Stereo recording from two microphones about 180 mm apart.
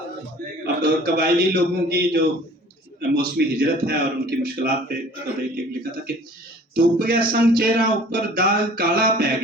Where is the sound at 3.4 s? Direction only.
65° right (ahead or behind).